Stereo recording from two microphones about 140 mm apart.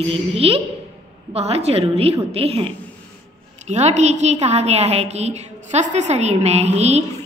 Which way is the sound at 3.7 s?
55° right (ahead or behind).